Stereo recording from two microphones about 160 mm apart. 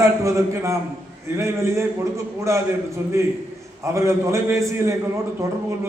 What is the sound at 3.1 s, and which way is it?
A man's voice, 20° right (ahead or behind).